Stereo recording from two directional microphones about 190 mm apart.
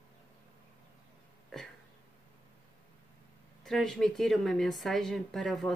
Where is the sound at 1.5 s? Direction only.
Centre (ahead or behind).